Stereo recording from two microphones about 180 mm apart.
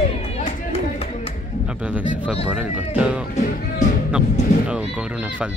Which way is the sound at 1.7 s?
5° right (ahead or behind).